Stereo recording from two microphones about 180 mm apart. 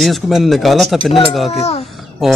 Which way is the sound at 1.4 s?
35° left (ahead or behind).